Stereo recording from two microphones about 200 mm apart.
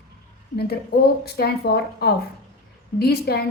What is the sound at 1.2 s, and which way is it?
A woman's voice, 55° left (ahead or behind).